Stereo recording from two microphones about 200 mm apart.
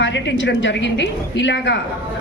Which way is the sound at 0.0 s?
65° left (ahead or behind).